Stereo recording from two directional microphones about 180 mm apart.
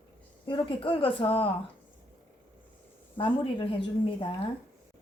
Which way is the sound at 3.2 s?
30° left (ahead or behind).